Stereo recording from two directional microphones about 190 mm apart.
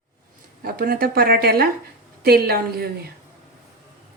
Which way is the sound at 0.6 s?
50° right (ahead or behind).